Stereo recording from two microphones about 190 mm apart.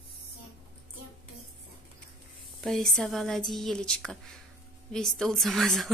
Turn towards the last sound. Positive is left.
turn(degrees=0)  # may be behind; listen again after turning